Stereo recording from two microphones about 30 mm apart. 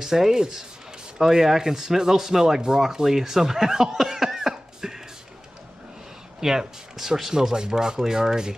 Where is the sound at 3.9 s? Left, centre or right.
Centre.